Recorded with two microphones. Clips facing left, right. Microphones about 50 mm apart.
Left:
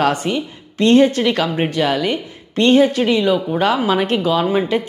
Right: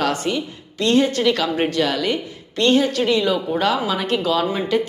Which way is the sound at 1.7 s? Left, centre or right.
Left.